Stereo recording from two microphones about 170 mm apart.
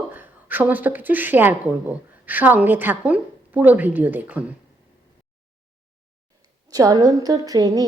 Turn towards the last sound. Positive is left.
turn(degrees=-20)  # may be behind; listen again after turning